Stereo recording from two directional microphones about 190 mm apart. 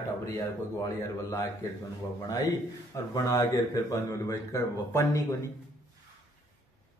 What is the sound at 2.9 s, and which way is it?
A man's voice, 15° left (ahead or behind).